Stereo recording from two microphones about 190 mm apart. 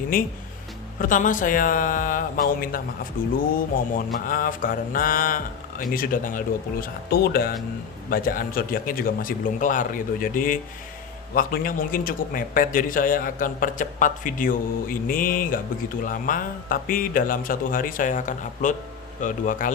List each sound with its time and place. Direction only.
0.1 s speech: 50° left (ahead or behind)